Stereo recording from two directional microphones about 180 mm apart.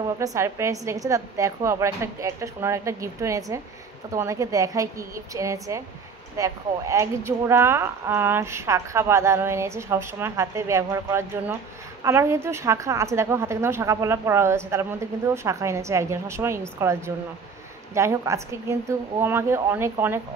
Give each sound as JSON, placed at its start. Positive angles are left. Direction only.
{"t": 0.0, "sound": "speech", "side_deg": -20}